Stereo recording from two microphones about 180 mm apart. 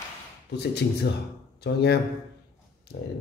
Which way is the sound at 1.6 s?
65° left (ahead or behind).